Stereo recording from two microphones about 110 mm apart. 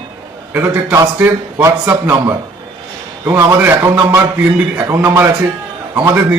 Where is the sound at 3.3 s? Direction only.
30° right (ahead or behind).